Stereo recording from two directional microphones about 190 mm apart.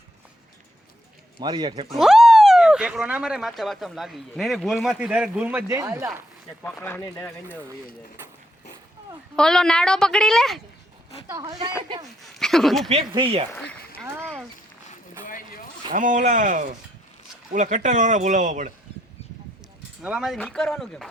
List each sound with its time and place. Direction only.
1.4 s speech: 20° right (ahead or behind)
2.0 s speech: centre (ahead or behind)
6.6 s speech: 10° left (ahead or behind)
9.3 s speech: 5° left (ahead or behind)
11.3 s speech: 20° right (ahead or behind)
12.2 s speech: centre (ahead or behind)
12.9 s speech: 30° right (ahead or behind)
13.5 s speech: 5° left (ahead or behind)
14.2 s a sound: 5° left (ahead or behind)
15.2 s boat: 45° left (ahead or behind)
15.9 s speech: 45° right (ahead or behind)
20.0 s speech: 5° right (ahead or behind)